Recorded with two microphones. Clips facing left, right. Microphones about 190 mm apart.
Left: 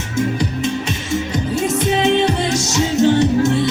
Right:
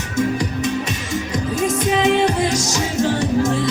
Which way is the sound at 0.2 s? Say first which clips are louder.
Left 1 dB; 25° left (ahead or behind).